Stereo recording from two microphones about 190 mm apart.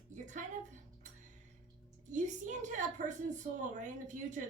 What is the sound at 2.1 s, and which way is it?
Child singing, 40° right (ahead or behind).